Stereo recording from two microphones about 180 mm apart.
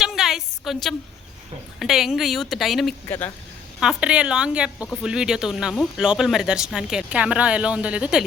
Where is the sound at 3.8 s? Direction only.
5° right (ahead or behind).